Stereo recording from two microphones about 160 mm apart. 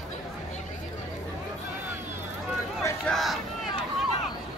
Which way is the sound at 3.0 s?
Centre (ahead or behind).